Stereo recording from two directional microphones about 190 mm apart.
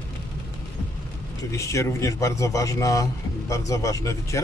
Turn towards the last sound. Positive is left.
turn(degrees=15)  # may be behind; listen again after turning